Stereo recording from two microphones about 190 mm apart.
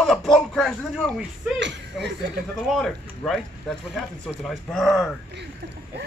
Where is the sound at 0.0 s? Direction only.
Centre (ahead or behind).